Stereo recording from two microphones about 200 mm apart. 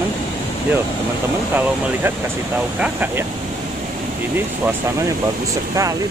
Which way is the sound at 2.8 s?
10° right (ahead or behind).